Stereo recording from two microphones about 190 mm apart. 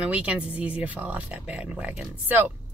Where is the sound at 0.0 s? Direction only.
5° right (ahead or behind).